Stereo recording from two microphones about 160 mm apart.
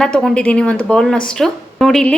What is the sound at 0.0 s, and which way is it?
A woman's voice, 5° left (ahead or behind).